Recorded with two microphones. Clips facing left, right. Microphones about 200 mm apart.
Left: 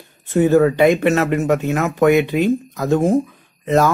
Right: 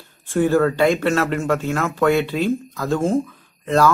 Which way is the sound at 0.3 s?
20° left (ahead or behind).